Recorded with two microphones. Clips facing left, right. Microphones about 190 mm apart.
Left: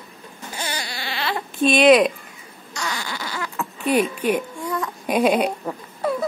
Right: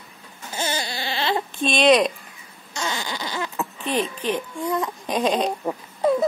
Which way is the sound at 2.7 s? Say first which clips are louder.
Right 1 dB; 25° right (ahead or behind).